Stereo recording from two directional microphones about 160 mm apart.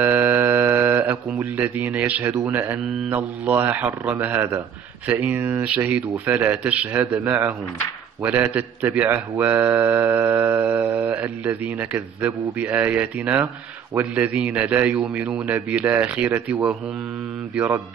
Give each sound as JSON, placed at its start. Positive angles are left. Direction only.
{"t": 0.0, "sound": "a man's voice", "side_deg": -10}